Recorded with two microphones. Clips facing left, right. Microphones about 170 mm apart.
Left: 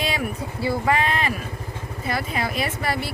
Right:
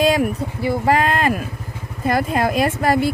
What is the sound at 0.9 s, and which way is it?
Speech, 45° right (ahead or behind).